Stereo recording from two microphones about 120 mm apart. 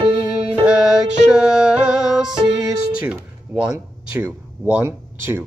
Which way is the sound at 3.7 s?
15° right (ahead or behind).